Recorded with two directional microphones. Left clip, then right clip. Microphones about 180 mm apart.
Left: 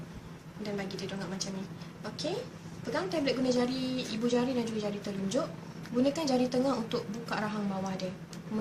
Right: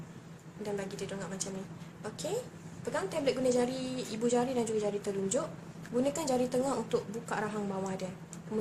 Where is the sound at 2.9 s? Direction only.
45° right (ahead or behind).